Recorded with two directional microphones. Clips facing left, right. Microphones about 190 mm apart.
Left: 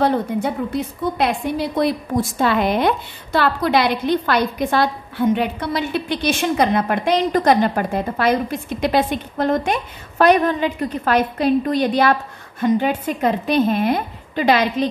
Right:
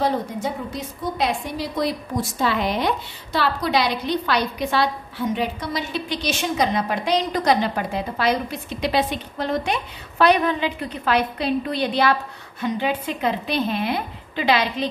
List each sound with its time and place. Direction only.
0.0 s a woman's voice: 60° left (ahead or behind)